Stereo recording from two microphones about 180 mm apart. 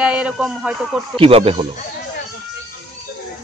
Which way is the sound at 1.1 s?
30° right (ahead or behind).